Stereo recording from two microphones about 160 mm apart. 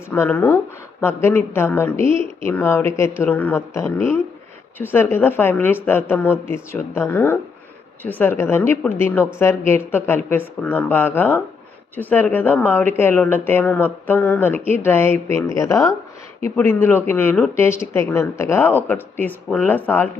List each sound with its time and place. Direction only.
0.1 s speech: 10° left (ahead or behind)